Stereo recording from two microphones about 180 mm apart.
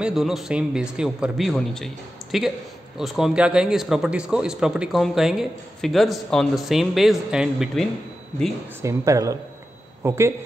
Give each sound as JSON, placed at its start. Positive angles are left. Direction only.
{"t": 0.0, "sound": "a man's voice", "side_deg": 0}
{"t": 8.8, "sound": "speech", "side_deg": -15}